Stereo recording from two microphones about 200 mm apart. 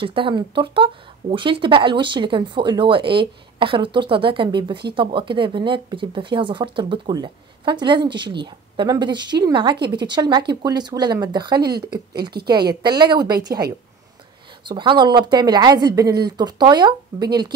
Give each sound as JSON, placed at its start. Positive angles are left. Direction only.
{"t": 0.0, "sound": "speech", "side_deg": -25}
{"t": 12.8, "sound": "speech", "side_deg": -20}